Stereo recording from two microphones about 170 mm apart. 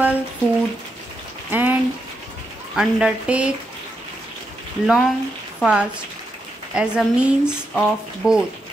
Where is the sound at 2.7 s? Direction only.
5° right (ahead or behind).